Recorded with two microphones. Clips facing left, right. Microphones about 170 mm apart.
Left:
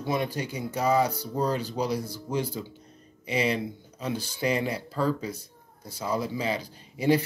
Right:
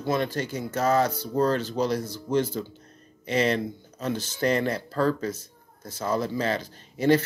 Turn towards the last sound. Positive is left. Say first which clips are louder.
# right 2 dB
turn(degrees=10)  # may be behind; listen again after turning